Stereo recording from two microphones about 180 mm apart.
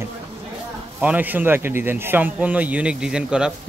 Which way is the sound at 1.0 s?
10° right (ahead or behind).